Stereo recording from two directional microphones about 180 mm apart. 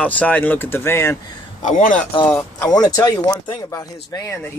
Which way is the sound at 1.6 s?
45° left (ahead or behind).